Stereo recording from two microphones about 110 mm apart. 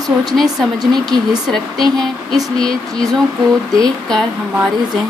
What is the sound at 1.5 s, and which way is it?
Speech, 5° left (ahead or behind).